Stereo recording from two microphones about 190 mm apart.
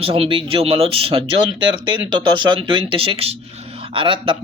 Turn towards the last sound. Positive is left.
turn(degrees=-25)  # may be behind; listen again after turning